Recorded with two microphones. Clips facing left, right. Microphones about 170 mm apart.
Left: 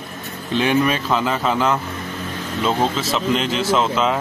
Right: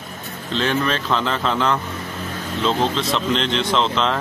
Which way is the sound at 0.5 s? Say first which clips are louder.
Left 3 dB; 10° left (ahead or behind).